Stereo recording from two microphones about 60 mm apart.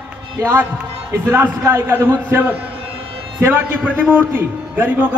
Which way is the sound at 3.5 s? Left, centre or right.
Right.